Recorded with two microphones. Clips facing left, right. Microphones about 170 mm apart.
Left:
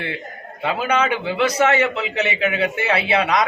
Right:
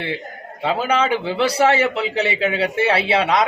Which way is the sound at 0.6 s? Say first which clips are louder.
Right 1 dB; 30° right (ahead or behind).